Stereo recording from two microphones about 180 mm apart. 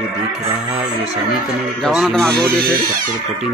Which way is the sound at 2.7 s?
50° right (ahead or behind).